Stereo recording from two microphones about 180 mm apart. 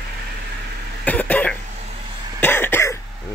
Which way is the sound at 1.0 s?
10° left (ahead or behind).